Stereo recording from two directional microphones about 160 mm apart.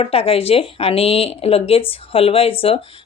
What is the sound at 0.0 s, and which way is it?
Speech, 35° left (ahead or behind).